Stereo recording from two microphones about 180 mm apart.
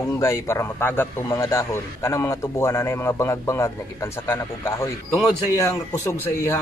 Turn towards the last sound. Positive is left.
turn(degrees=15)  # may be behind; listen again after turning